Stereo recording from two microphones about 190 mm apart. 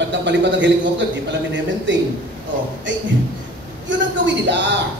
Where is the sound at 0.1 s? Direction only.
65° right (ahead or behind).